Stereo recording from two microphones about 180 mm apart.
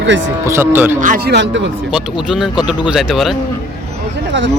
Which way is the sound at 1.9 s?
5° right (ahead or behind).